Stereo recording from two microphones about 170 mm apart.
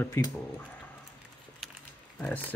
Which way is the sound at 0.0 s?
20° left (ahead or behind).